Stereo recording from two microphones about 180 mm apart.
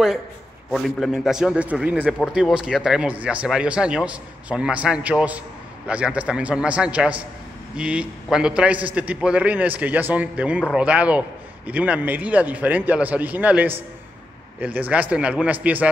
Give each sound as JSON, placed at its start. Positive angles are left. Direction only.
{"t": 0.7, "sound": "a man's voice", "side_deg": 0}